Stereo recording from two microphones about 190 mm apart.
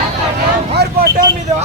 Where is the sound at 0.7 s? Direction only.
60° right (ahead or behind).